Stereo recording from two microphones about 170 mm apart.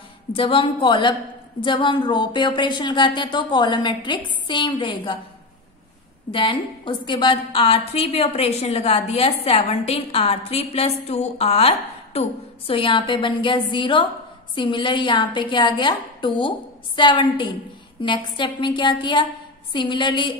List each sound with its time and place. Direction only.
0.3 s a woman's voice: 30° left (ahead or behind)
6.3 s a woman's voice: 30° left (ahead or behind)